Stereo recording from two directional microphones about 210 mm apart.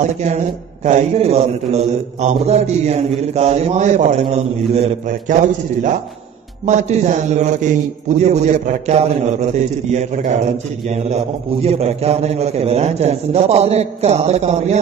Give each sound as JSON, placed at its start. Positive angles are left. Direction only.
{"t": 0.8, "sound": "a man's voice", "side_deg": -30}